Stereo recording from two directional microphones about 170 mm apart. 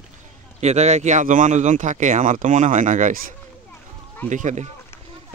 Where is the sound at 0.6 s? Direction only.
40° right (ahead or behind).